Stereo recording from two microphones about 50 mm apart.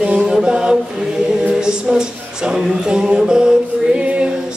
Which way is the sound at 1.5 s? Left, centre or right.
Centre.